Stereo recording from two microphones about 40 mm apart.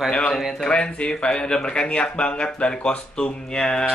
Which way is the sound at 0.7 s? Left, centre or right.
Left.